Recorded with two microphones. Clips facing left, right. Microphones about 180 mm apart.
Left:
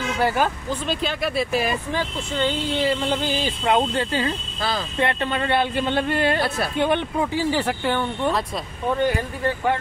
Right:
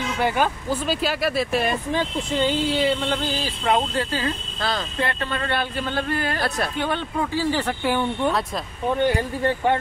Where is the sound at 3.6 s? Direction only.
25° left (ahead or behind).